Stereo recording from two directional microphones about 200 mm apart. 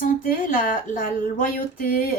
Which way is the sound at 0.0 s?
45° left (ahead or behind).